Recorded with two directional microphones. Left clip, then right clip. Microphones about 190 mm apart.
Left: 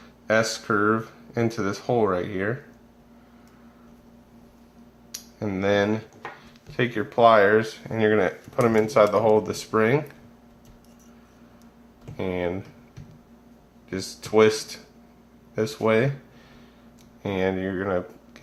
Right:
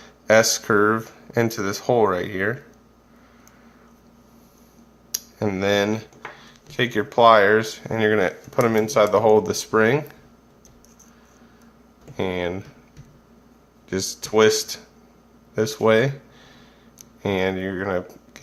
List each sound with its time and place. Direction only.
0.0 s speech: 25° right (ahead or behind)
5.1 s speech: 25° right (ahead or behind)
12.1 s speech: 25° right (ahead or behind)
13.9 s speech: 20° right (ahead or behind)
17.2 s speech: 20° right (ahead or behind)